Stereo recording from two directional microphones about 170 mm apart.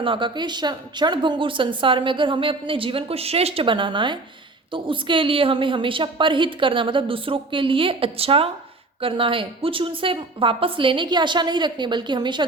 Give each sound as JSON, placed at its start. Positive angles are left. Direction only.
{"t": 0.0, "sound": "a woman's voice", "side_deg": -30}